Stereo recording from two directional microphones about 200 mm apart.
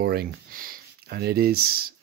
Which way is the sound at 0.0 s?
50° right (ahead or behind).